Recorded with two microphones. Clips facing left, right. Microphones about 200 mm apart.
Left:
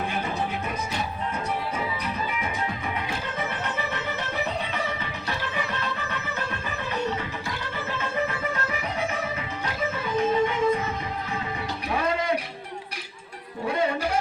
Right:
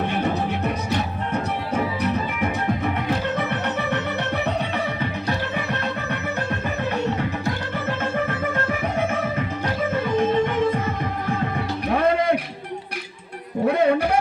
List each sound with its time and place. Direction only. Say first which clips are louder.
0.1 s music: right 5 dB; 70° right (ahead or behind)
13.7 s music: right 7 dB; 60° right (ahead or behind)